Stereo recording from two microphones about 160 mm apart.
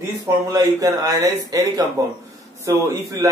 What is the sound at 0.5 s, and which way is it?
Speech, 20° right (ahead or behind).